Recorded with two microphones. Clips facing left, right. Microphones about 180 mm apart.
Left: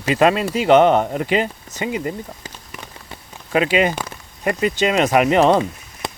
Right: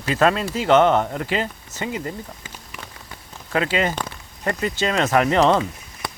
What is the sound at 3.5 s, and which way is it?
Speech, 15° left (ahead or behind).